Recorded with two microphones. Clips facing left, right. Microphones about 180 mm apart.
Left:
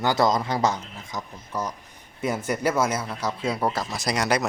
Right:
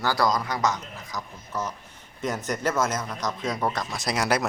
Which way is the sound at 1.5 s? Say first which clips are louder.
Left 1 dB; 15° left (ahead or behind).